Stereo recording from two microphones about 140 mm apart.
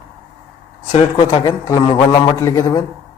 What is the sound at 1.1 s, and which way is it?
A man's voice, 30° left (ahead or behind).